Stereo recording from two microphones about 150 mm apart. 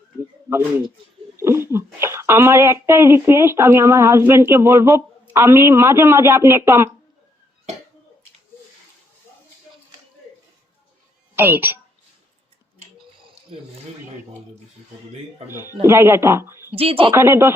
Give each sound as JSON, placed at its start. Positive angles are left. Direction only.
{"t": 1.4, "sound": "speech", "side_deg": -15}
{"t": 11.3, "sound": "a woman's voice", "side_deg": -15}
{"t": 15.8, "sound": "speech", "side_deg": -15}
{"t": 16.7, "sound": "speech", "side_deg": -40}
{"t": 17.2, "sound": "speech", "side_deg": -15}